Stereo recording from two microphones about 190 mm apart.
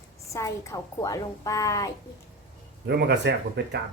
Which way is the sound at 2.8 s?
60° right (ahead or behind).